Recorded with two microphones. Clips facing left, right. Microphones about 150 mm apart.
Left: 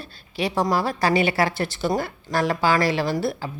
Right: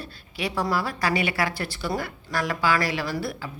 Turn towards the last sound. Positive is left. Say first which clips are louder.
# left 5 dB
turn(degrees=30)  # may be behind; listen again after turning